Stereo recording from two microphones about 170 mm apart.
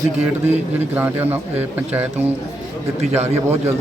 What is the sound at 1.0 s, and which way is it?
Speech, 10° right (ahead or behind).